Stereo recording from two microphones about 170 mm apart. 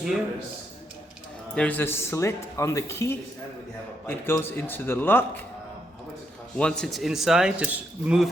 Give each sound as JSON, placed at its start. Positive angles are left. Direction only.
{"t": 1.5, "sound": "speech", "side_deg": 10}
{"t": 6.6, "sound": "speech", "side_deg": 5}